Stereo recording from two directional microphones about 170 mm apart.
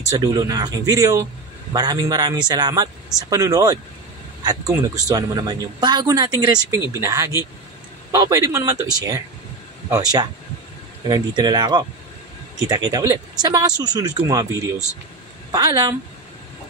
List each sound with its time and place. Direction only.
0.2 s speech: 20° right (ahead or behind)